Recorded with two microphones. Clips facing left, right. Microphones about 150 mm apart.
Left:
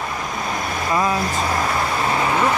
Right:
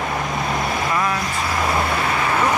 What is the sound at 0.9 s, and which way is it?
Speech, 25° left (ahead or behind).